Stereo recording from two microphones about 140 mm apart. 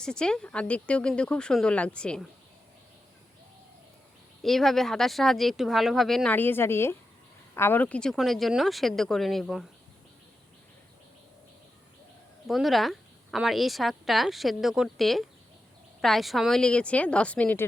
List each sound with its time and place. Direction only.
0.0 s speech: 5° left (ahead or behind)
4.4 s a woman's voice: centre (ahead or behind)
6.3 s a woman's voice: 15° left (ahead or behind)
12.5 s a woman's voice: centre (ahead or behind)